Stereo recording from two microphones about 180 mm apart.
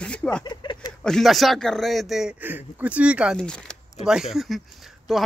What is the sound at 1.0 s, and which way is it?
Speech, centre (ahead or behind).